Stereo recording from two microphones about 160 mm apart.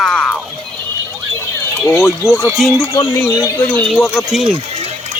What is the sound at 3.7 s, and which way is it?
Speech, 10° left (ahead or behind).